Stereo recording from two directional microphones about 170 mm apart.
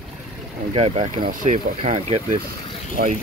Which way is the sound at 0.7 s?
35° right (ahead or behind).